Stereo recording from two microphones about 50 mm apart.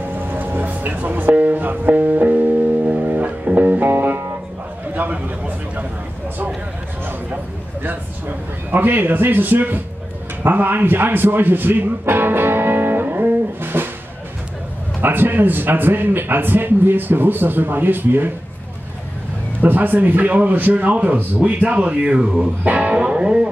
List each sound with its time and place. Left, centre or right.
0.0 s a sound: right
3.9 s music: right
4.9 s a sound: right
7.8 s a man's voice: right
15.0 s a man's voice: right
19.6 s a man's voice: right; by 22.5 s centre
22.6 s speech: right